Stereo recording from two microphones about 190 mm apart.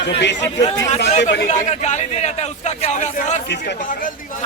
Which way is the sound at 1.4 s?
35° left (ahead or behind).